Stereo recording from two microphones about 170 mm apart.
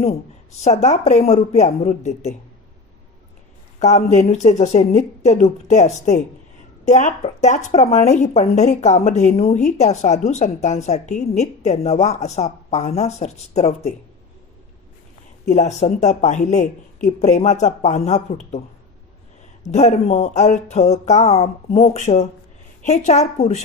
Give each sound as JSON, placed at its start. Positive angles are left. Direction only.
{"t": 0.6, "sound": "speech", "side_deg": 40}
{"t": 3.8, "sound": "speech", "side_deg": 40}
{"t": 15.4, "sound": "speech", "side_deg": 45}
{"t": 19.6, "sound": "speech", "side_deg": 40}